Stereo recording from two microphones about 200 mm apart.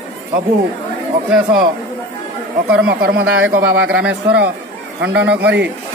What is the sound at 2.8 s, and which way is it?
Speech, 50° right (ahead or behind).